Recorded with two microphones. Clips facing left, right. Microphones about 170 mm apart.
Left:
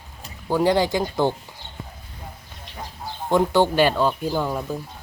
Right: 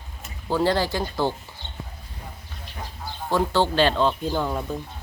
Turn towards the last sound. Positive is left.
turn(degrees=5)  # may be behind; listen again after turning